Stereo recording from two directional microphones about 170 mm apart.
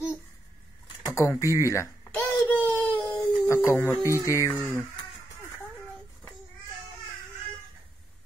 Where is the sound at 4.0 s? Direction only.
15° right (ahead or behind).